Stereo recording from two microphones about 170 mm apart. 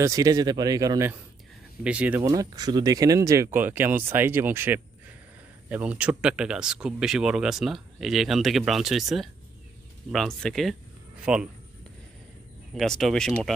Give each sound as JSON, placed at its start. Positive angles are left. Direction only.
{"t": 0.0, "sound": "speech", "side_deg": -20}
{"t": 1.8, "sound": "speech", "side_deg": -5}
{"t": 2.2, "sound": "speech", "side_deg": -20}
{"t": 12.7, "sound": "speech", "side_deg": 0}